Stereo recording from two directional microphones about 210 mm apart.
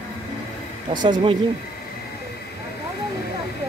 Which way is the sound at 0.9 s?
20° right (ahead or behind).